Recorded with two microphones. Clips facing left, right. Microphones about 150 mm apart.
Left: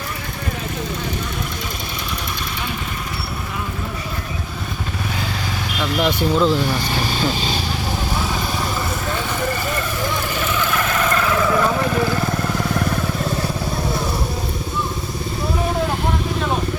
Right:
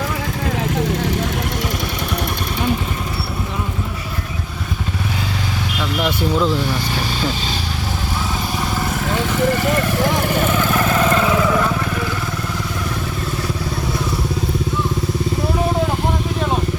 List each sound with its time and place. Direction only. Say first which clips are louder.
0.8 s vehicle: right 6 dB; 90° right
6.0 s speech: left 1 dB; 5° right (ahead or behind)
9.1 s vehicle: right 8 dB; 75° right (ahead or behind); by 11.3 s 20° right (ahead or behind)